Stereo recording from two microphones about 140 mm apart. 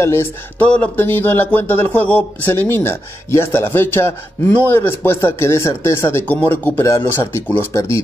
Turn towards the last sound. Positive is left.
turn(degrees=20)  # may be behind; listen again after turning